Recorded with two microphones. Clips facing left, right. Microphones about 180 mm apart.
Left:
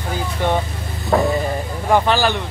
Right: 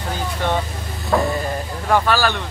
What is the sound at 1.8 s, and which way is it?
Speech, 15° left (ahead or behind).